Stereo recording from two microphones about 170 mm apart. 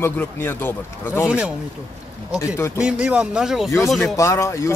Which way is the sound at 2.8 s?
5° right (ahead or behind).